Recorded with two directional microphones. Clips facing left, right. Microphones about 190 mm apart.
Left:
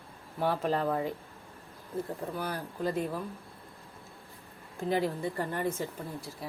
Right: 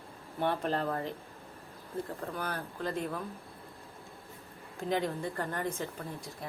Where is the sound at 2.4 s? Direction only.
10° left (ahead or behind).